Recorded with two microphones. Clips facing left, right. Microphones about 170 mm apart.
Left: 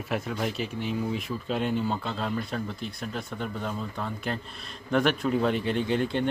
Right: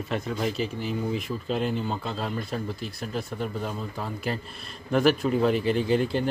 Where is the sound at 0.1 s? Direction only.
Centre (ahead or behind).